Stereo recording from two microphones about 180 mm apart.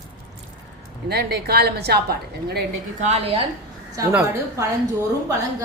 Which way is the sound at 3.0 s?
40° right (ahead or behind).